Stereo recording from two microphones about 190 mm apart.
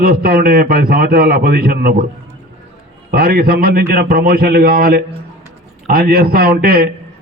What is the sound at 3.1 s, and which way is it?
A man's voice, 50° right (ahead or behind).